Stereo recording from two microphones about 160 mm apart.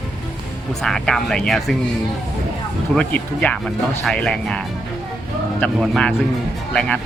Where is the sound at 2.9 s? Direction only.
5° left (ahead or behind).